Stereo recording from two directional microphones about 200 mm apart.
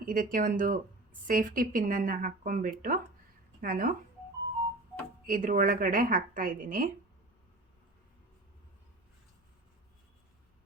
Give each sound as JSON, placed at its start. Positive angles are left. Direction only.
{"t": 0.0, "sound": "a woman's voice", "side_deg": -45}
{"t": 5.2, "sound": "a woman's voice", "side_deg": -45}